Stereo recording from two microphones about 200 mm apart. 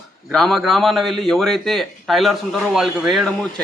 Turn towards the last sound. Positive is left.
turn(degrees=0)  # may be behind; listen again after turning